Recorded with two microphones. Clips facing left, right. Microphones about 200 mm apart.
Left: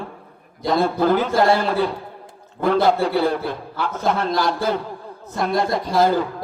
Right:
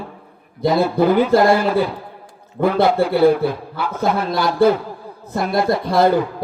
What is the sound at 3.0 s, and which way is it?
A man's voice, 5° right (ahead or behind).